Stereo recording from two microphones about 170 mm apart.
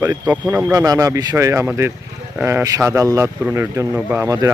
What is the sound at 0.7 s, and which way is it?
Speech, 20° right (ahead or behind).